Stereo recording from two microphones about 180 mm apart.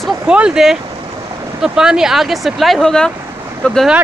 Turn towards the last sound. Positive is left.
turn(degrees=5)  # may be behind; listen again after turning